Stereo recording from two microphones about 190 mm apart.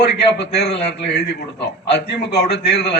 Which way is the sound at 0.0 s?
65° left (ahead or behind).